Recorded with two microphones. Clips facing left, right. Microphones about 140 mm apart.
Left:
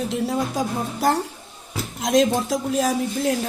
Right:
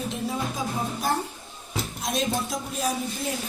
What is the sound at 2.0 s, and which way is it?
Speech, 90° left.